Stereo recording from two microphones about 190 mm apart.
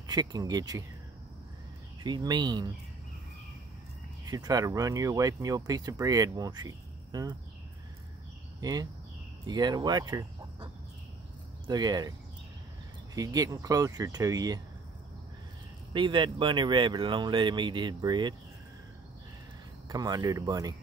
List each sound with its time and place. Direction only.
0.0 s speech: 20° right (ahead or behind)
2.0 s speech: 20° right (ahead or behind)
4.3 s speech: 20° right (ahead or behind)
8.5 s speech: 20° right (ahead or behind)
13.1 s speech: 20° right (ahead or behind)
15.9 s speech: 25° right (ahead or behind)
19.9 s speech: 20° right (ahead or behind)